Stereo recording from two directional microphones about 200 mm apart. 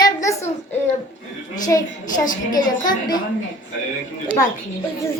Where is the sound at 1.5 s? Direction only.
20° left (ahead or behind).